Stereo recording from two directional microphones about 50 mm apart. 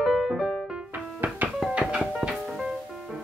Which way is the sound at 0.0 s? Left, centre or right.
Centre.